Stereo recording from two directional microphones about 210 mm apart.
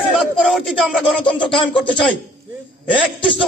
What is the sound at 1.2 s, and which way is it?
Speech, 25° left (ahead or behind).